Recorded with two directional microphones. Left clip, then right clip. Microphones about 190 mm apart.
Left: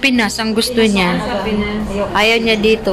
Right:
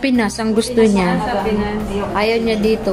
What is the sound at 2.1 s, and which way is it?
Speech, 10° left (ahead or behind).